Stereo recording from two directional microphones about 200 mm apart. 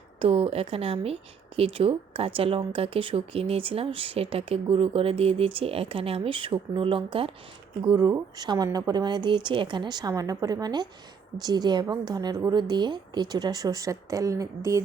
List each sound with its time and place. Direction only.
0.2 s speech: 30° right (ahead or behind)
7.9 s speech: 15° right (ahead or behind)